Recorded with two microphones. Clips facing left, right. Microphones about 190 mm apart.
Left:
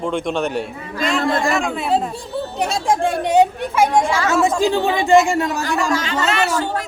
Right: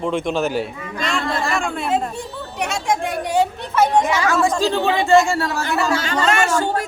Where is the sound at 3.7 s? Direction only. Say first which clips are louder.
Even; 10° left (ahead or behind).